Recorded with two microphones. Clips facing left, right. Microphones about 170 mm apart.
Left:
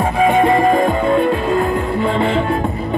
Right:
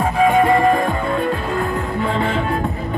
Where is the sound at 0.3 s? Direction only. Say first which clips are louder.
Left 2 dB; 20° left (ahead or behind).